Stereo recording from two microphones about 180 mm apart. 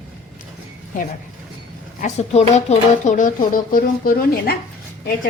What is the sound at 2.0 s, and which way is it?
Speech, 35° left (ahead or behind).